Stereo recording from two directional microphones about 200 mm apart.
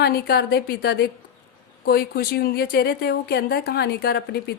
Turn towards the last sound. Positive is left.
turn(degrees=50)  # may be behind; listen again after turning